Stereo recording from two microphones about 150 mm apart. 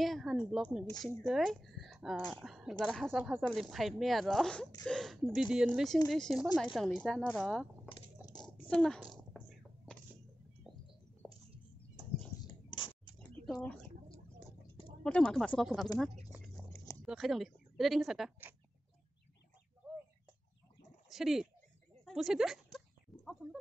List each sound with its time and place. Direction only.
0.0 s speech: centre (ahead or behind)
8.4 s a sound: 5° left (ahead or behind)
11.2 s bird: 5° right (ahead or behind)
12.6 s a sound: 30° left (ahead or behind)
13.5 s speech: 5° left (ahead or behind)
15.0 s speech: 5° left (ahead or behind)
17.0 s a woman's voice: centre (ahead or behind)
21.1 s speech: centre (ahead or behind)
22.0 s a sound: centre (ahead or behind)